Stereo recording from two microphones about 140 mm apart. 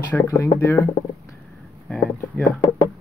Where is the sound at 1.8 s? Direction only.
Centre (ahead or behind).